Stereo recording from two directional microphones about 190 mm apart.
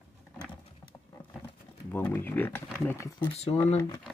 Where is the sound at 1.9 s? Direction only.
10° left (ahead or behind).